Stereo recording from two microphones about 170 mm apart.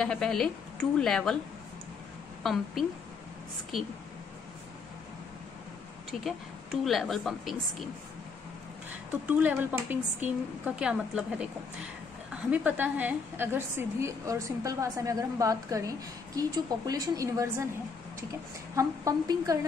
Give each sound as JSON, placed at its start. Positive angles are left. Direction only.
{"t": 0.0, "sound": "a woman's voice", "side_deg": 5}
{"t": 2.4, "sound": "a woman's voice", "side_deg": 0}
{"t": 6.2, "sound": "a woman's voice", "side_deg": 0}
{"t": 9.3, "sound": "a woman's voice", "side_deg": -10}
{"t": 12.4, "sound": "a woman's voice", "side_deg": -10}
{"t": 18.8, "sound": "a woman's voice", "side_deg": -20}